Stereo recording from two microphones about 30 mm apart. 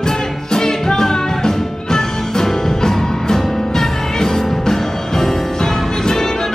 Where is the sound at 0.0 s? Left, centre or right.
Left.